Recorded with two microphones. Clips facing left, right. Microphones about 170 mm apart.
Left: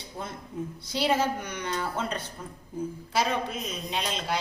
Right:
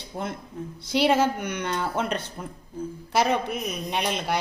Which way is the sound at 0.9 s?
75° right (ahead or behind).